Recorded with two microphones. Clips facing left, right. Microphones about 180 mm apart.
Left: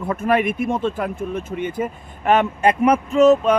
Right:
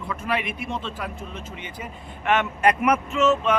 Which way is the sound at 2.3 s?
35° left (ahead or behind).